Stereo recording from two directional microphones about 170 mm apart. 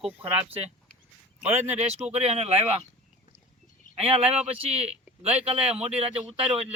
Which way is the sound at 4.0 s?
35° right (ahead or behind).